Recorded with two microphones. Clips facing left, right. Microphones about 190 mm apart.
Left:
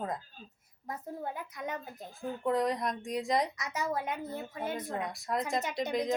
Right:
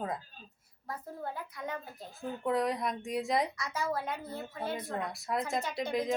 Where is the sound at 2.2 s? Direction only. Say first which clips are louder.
Left 1 dB; centre (ahead or behind).